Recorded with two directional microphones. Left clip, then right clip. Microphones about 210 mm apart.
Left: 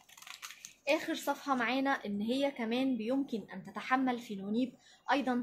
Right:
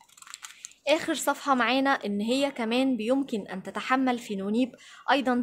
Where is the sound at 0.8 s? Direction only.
50° right (ahead or behind).